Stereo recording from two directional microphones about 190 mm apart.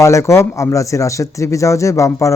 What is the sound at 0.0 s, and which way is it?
Speech, 15° left (ahead or behind).